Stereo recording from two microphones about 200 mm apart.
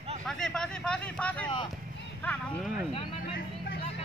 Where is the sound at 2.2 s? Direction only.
5° left (ahead or behind).